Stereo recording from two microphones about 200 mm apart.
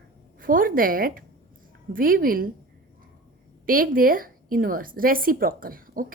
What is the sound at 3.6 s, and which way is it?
A woman's voice, 45° right (ahead or behind).